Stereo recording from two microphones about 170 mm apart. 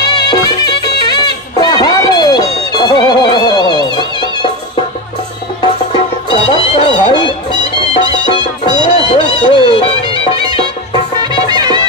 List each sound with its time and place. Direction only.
0.1 s music: 25° left (ahead or behind)
6.3 s music: 35° left (ahead or behind)
8.8 s music: 30° left (ahead or behind)
11.4 s music: 25° right (ahead or behind)